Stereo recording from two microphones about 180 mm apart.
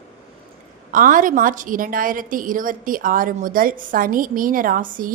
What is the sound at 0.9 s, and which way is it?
A woman's voice, 50° right (ahead or behind).